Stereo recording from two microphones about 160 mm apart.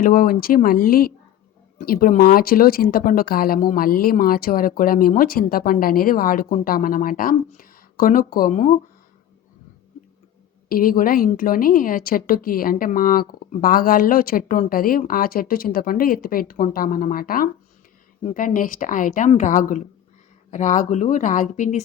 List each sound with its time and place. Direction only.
0.0 s speech: 60° left (ahead or behind)
10.7 s speech: 65° left (ahead or behind)